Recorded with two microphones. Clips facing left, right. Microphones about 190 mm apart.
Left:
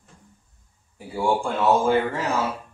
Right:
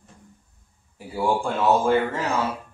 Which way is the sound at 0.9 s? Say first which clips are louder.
Even; centre (ahead or behind).